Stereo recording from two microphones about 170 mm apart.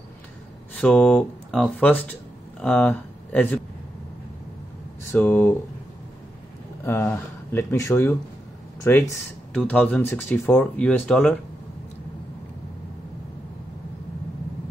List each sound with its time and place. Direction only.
0.7 s speech: 5° left (ahead or behind)
5.1 s speech: 10° left (ahead or behind)
6.9 s speech: 15° left (ahead or behind)